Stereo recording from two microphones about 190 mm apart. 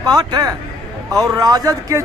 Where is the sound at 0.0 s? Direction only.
20° right (ahead or behind).